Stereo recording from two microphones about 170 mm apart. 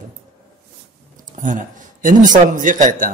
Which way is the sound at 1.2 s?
50° right (ahead or behind).